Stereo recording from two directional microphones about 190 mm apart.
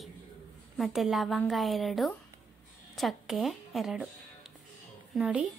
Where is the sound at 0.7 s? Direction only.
Centre (ahead or behind).